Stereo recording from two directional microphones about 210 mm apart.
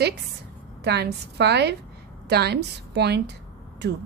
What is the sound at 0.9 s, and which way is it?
Speech, 50° right (ahead or behind).